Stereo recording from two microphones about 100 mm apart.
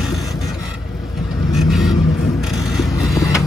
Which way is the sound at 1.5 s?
Centre (ahead or behind).